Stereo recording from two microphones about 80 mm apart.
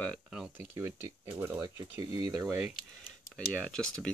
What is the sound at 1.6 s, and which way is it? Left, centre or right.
Speech, right.